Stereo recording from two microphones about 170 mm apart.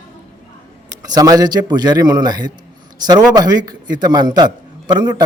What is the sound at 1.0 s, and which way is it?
A man's voice, 20° right (ahead or behind).